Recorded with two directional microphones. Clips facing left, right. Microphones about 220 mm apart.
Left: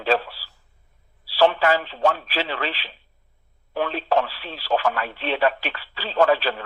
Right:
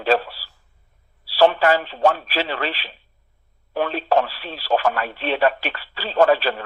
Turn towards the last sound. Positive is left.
turn(degrees=-45)  # may be behind; listen again after turning